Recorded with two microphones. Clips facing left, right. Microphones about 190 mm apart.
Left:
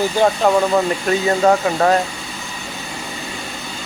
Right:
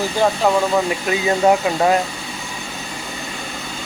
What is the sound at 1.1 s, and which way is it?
Speech, 10° right (ahead or behind).